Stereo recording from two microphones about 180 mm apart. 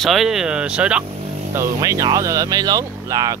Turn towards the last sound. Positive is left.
turn(degrees=-20)  # may be behind; listen again after turning